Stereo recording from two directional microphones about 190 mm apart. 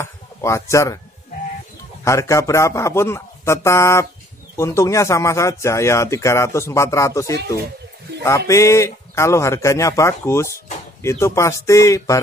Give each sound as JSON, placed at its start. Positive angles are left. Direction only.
{"t": 0.0, "sound": "speech", "side_deg": 15}
{"t": 2.0, "sound": "speech", "side_deg": 15}
{"t": 8.5, "sound": "speech", "side_deg": 15}